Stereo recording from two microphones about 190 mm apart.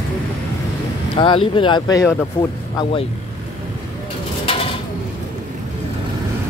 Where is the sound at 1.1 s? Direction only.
25° left (ahead or behind).